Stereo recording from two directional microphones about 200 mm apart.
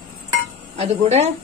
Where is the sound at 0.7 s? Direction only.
30° right (ahead or behind).